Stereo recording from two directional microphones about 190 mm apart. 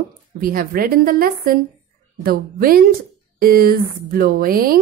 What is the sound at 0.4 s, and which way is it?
A woman's voice, 50° right (ahead or behind).